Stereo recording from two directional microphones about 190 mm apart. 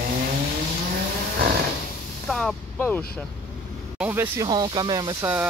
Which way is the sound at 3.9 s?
10° right (ahead or behind).